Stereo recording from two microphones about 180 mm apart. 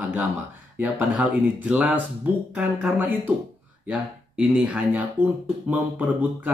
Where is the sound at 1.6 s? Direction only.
10° right (ahead or behind).